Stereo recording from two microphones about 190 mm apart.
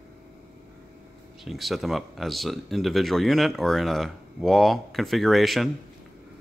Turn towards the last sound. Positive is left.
turn(degrees=0)  # may be behind; listen again after turning